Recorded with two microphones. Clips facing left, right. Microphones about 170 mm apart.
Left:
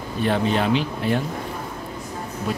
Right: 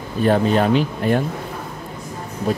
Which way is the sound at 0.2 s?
45° right (ahead or behind).